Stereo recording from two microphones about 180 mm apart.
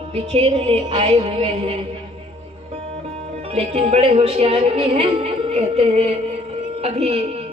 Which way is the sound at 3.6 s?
35° right (ahead or behind).